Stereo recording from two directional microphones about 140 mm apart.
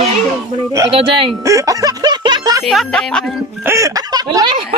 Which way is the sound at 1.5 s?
25° right (ahead or behind).